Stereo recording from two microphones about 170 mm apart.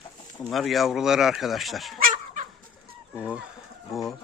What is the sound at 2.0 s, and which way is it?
Chicken, 50° right (ahead or behind).